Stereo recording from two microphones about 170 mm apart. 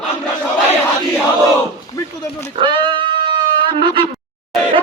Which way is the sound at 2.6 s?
25° right (ahead or behind).